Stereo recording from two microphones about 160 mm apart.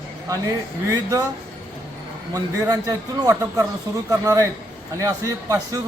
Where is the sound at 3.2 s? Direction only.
15° right (ahead or behind).